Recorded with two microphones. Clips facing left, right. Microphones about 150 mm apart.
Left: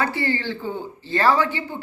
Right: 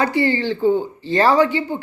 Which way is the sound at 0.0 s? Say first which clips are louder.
Right 6 dB; 15° right (ahead or behind).